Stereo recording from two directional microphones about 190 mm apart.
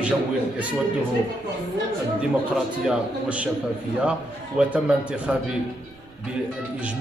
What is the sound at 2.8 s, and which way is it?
Speech, 5° right (ahead or behind).